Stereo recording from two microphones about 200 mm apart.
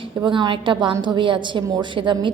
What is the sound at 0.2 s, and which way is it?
A woman's voice, 20° right (ahead or behind).